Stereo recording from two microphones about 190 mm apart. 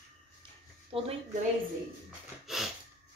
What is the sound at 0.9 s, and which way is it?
Speech, 30° right (ahead or behind).